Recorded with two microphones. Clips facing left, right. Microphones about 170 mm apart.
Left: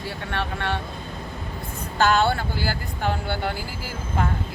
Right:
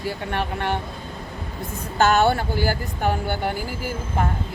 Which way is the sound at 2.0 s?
50° right (ahead or behind).